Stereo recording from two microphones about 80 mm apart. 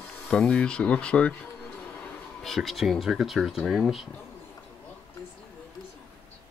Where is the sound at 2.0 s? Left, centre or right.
Centre.